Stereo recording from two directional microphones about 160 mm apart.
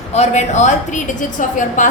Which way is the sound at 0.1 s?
45° left (ahead or behind).